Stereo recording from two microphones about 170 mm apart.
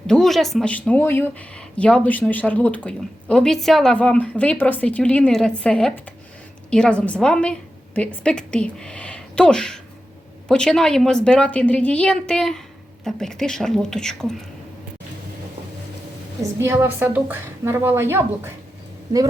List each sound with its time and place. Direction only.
0.1 s a woman's voice: centre (ahead or behind)
16.6 s a woman's voice: 15° right (ahead or behind)